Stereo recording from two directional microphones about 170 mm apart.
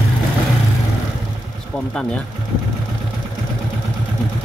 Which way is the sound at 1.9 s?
5° left (ahead or behind).